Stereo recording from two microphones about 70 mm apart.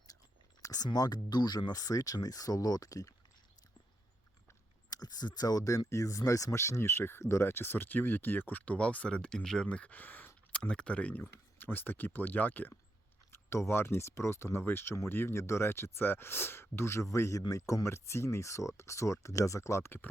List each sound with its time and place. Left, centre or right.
0.6 s speech: left
4.9 s speech: left
10.5 s speech: centre
13.3 s speech: left